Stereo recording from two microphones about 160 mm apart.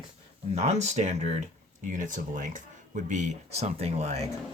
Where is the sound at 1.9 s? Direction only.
55° right (ahead or behind).